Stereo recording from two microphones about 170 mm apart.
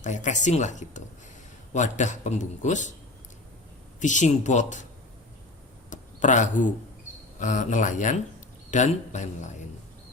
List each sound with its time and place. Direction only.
0.0 s a man's voice: 45° left (ahead or behind)
4.0 s a man's voice: 45° left (ahead or behind)
5.9 s a sound: 45° left (ahead or behind)
7.3 s a man's voice: 45° left (ahead or behind)